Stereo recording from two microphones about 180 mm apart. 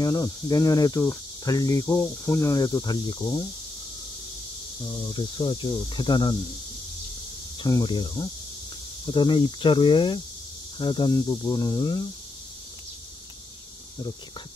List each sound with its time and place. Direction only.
0.0 s speech: 20° left (ahead or behind)
5.1 s speech: 30° left (ahead or behind)
7.6 s speech: 25° left (ahead or behind)